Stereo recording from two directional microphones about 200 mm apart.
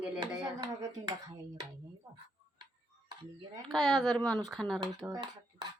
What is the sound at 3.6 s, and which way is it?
A woman's voice, centre (ahead or behind).